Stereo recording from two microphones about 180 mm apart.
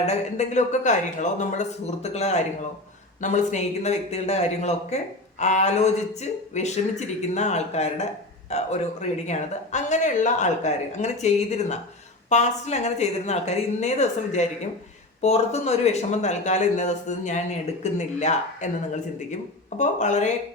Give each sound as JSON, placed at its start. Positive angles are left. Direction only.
{"t": 0.0, "sound": "a man's voice", "side_deg": 40}
{"t": 19.8, "sound": "a man's voice", "side_deg": 40}